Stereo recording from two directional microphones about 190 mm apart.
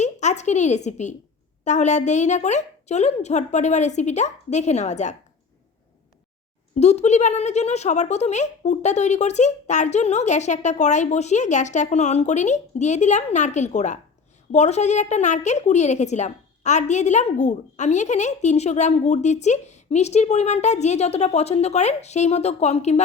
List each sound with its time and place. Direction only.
0.0 s a woman's voice: 35° left (ahead or behind)
6.7 s a woman's voice: 35° left (ahead or behind)